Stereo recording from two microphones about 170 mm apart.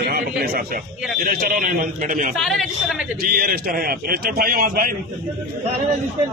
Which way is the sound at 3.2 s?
60° right (ahead or behind).